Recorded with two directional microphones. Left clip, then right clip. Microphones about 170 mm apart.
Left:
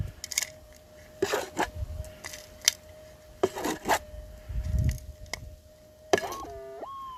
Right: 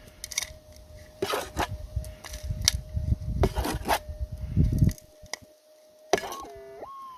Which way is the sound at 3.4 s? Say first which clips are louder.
Left 1 dB; 20° right (ahead or behind).